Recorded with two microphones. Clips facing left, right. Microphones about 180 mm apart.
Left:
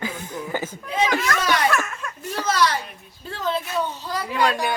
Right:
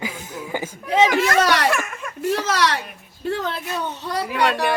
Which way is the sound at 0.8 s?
75° right (ahead or behind).